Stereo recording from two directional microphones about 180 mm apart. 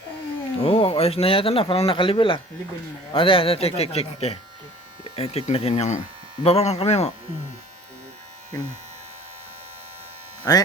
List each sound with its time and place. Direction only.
0.6 s speech: 30° left (ahead or behind)
10.5 s speech: 20° left (ahead or behind)